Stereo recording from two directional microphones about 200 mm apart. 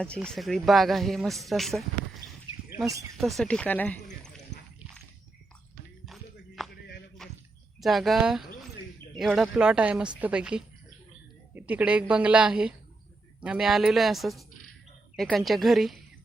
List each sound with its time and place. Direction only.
0.0 s a man's voice: 5° left (ahead or behind)
2.7 s speech: 15° right (ahead or behind)
3.2 s speech: centre (ahead or behind)
6.6 s a sound: centre (ahead or behind)
7.8 s a man's voice: centre (ahead or behind)